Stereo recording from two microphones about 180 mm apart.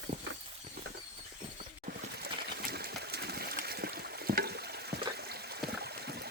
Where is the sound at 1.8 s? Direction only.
55° right (ahead or behind).